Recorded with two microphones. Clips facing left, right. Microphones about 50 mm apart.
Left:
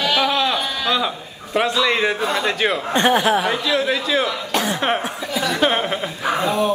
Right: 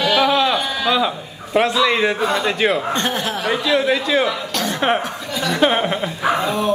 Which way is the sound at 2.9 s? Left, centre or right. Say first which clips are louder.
Left 5 dB; left.